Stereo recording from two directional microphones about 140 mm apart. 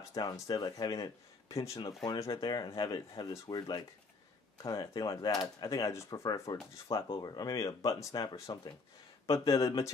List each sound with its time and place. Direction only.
0.1 s speech: 25° left (ahead or behind)